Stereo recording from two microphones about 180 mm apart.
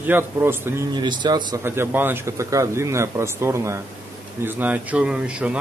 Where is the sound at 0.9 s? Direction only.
25° right (ahead or behind).